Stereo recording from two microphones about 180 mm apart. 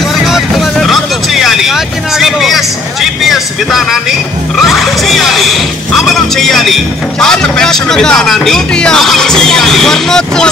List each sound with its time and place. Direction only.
0.3 s vehicle: centre (ahead or behind)
4.6 s speech: centre (ahead or behind)